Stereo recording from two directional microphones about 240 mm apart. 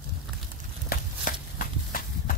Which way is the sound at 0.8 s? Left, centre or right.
Left.